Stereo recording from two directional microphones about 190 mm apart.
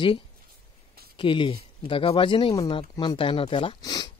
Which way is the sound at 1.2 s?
25° left (ahead or behind).